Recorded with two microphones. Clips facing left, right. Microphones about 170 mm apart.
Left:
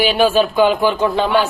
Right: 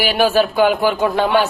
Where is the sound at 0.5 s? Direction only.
10° right (ahead or behind).